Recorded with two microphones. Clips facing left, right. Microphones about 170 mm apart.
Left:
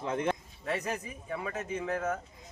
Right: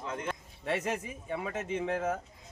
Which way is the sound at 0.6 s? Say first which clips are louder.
Right 1 dB; 25° right (ahead or behind).